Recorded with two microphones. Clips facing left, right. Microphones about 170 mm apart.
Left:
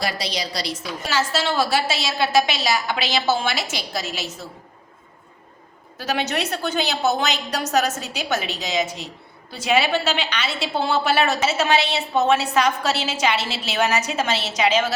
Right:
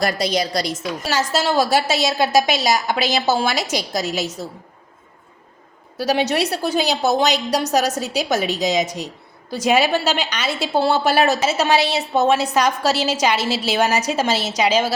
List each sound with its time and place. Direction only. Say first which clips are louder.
0.0 s a woman's voice: right 6 dB; 50° right (ahead or behind)
6.0 s a woman's voice: right 5 dB; 35° right (ahead or behind)